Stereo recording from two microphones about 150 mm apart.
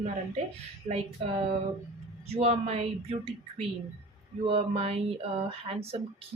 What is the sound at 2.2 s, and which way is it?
Speech, 45° right (ahead or behind).